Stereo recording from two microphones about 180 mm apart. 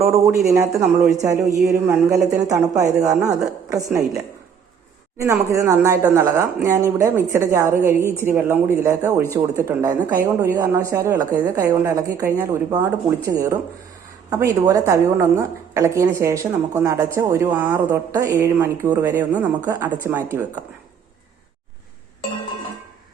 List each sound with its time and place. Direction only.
0.0 s a woman's voice: 15° right (ahead or behind)
5.1 s a woman's voice: 15° right (ahead or behind)
19.9 s a woman's voice: 10° right (ahead or behind)